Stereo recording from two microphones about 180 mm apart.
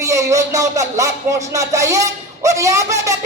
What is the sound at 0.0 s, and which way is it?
Speech, 20° right (ahead or behind).